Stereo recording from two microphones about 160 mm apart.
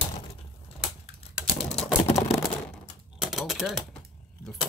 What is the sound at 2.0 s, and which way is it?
Typing, 40° left (ahead or behind).